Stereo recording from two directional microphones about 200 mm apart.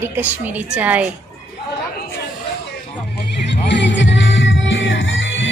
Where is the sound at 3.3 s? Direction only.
60° left (ahead or behind).